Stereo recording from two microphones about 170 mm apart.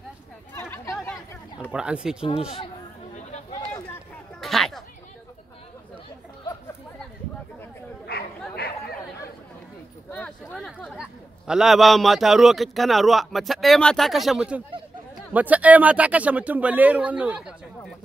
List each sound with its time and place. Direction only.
0.6 s chatter: 15° left (ahead or behind)
1.7 s a man's voice: 5° right (ahead or behind)
2.2 s speech: 35° left (ahead or behind)
3.2 s chatter: 40° left (ahead or behind)
4.4 s a sound: centre (ahead or behind)
8.1 s chatter: 65° left (ahead or behind)
10.1 s a sound: 5° left (ahead or behind)
11.0 s a man's voice: 5° right (ahead or behind)